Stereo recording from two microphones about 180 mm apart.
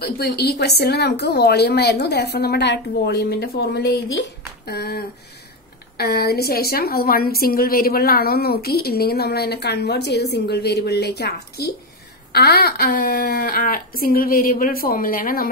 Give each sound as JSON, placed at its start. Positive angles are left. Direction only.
{"t": 0.0, "sound": "a woman's voice", "side_deg": 60}